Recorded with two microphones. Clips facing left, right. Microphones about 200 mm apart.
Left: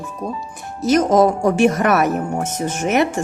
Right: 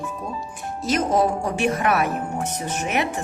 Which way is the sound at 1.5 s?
45° left (ahead or behind).